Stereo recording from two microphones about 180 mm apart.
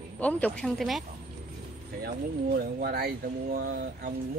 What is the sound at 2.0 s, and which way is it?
Speech, 55° right (ahead or behind).